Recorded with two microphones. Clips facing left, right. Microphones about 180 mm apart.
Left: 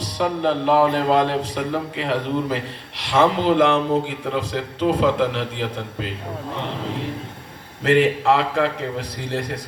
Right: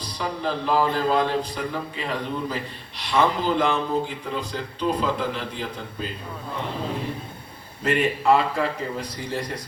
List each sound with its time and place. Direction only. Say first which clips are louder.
0.0 s a man's voice: left 7 dB; 70° left (ahead or behind)
7.9 s a man's voice: left 4 dB; 75° left (ahead or behind)